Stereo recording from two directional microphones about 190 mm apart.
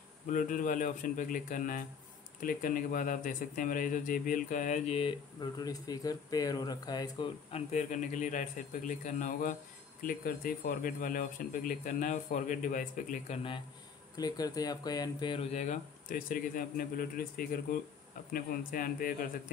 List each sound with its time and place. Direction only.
0.3 s speech: 45° left (ahead or behind); by 7.2 s 20° left (ahead or behind)
7.5 s speech: 40° left (ahead or behind)
14.1 s speech: 20° left (ahead or behind)
15.5 s speech: 40° left (ahead or behind)